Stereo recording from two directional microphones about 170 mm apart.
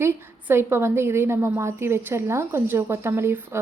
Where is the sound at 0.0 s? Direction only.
15° right (ahead or behind).